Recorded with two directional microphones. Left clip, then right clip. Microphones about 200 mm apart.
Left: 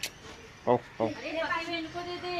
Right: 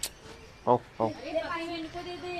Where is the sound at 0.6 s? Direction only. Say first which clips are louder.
Right 1 dB; 10° right (ahead or behind).